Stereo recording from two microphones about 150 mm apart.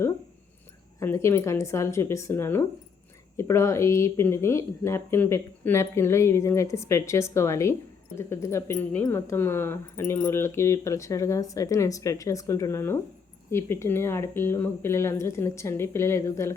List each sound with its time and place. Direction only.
0.9 s speech: 20° left (ahead or behind)